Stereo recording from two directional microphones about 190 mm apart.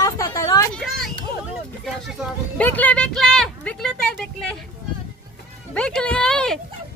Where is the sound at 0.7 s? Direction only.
Centre (ahead or behind).